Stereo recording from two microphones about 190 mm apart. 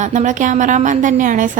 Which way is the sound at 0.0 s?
40° right (ahead or behind).